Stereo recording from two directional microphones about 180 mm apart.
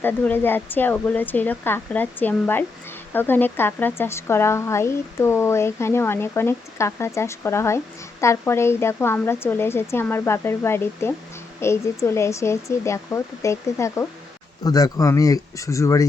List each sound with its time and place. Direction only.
0.0 s speech: 10° left (ahead or behind)